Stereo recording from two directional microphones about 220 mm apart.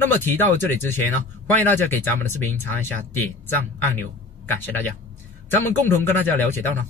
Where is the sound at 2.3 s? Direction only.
10° left (ahead or behind).